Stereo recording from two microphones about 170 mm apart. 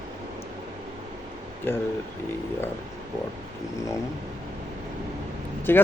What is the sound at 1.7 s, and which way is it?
Speech, 15° left (ahead or behind).